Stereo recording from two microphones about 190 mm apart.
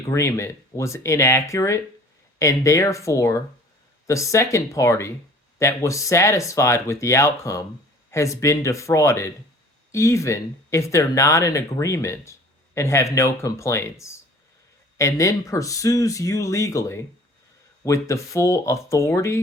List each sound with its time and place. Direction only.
0.1 s speech: 15° left (ahead or behind)